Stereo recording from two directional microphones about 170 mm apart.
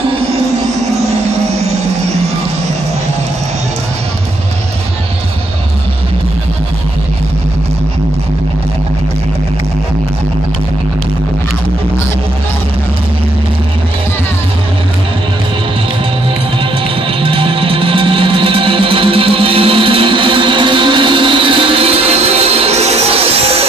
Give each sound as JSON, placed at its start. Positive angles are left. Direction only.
{"t": 17.2, "sound": "music", "side_deg": -30}